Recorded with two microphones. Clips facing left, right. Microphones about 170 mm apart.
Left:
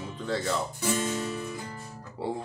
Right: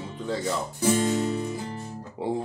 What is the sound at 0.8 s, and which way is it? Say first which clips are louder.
Music: right 8 dB; 25° right (ahead or behind).